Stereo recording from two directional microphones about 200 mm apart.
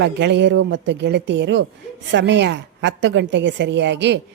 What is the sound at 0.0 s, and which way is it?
Speech, 60° right (ahead or behind).